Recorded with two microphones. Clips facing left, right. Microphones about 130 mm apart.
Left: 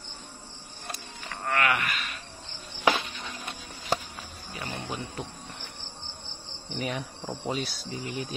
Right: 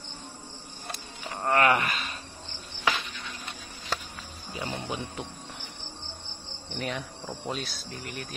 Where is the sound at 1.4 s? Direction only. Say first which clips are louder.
Right 4 dB; 35° right (ahead or behind).